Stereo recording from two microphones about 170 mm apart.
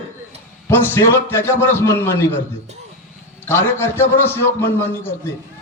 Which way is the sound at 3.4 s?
15° left (ahead or behind).